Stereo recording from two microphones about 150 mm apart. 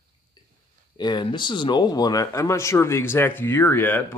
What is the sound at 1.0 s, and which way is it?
Speech, 30° left (ahead or behind).